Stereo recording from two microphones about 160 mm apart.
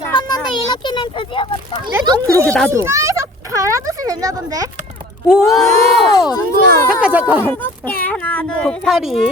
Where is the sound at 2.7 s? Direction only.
20° right (ahead or behind).